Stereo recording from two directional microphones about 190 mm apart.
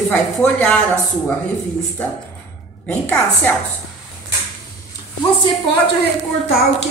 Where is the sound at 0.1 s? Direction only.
10° left (ahead or behind).